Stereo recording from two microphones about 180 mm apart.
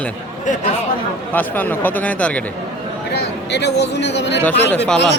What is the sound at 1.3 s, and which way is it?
A man's voice, 10° left (ahead or behind).